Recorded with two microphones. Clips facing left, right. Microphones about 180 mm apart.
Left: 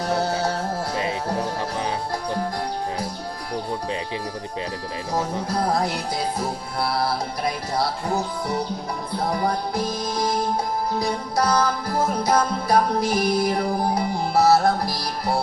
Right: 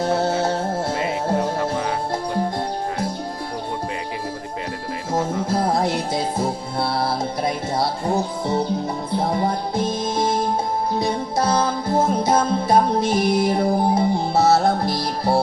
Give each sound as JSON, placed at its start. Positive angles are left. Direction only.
{"t": 0.0, "sound": "music", "side_deg": -25}
{"t": 5.1, "sound": "music", "side_deg": -25}